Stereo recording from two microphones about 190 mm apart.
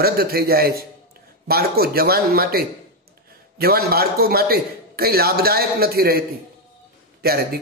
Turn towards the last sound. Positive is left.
turn(degrees=-55)  # may be behind; listen again after turning